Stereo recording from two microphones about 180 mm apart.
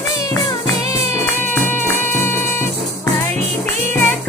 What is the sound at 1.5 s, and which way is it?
Music, 10° left (ahead or behind).